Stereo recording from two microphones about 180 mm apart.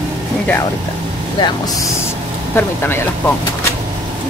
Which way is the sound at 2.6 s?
15° left (ahead or behind).